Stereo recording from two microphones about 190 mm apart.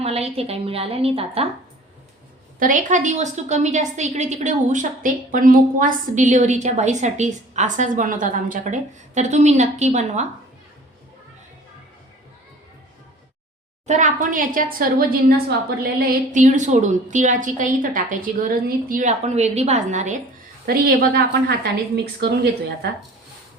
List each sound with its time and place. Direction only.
0.0 s a woman's voice: 30° right (ahead or behind)
2.6 s a woman's voice: 45° right (ahead or behind)
13.8 s a woman's voice: 40° right (ahead or behind)
20.7 s a woman's voice: 50° right (ahead or behind)